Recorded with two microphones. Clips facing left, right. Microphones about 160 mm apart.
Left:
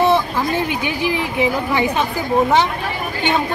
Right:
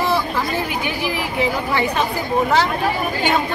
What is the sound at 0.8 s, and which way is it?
A woman's voice, 20° left (ahead or behind).